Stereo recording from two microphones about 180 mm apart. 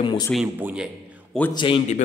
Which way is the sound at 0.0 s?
25° left (ahead or behind).